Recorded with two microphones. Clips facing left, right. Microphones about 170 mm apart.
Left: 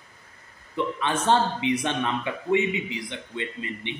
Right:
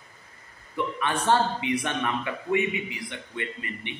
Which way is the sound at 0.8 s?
20° left (ahead or behind).